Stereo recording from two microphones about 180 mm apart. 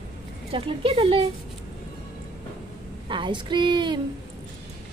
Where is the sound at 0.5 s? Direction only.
30° right (ahead or behind).